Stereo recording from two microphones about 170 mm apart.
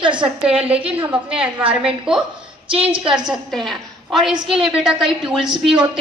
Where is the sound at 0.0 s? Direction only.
30° right (ahead or behind).